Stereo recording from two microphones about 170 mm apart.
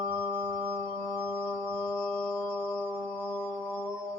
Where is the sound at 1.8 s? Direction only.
5° left (ahead or behind).